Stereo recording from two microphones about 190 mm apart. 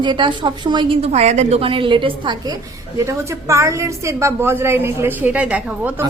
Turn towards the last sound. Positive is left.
turn(degrees=-5)  # may be behind; listen again after turning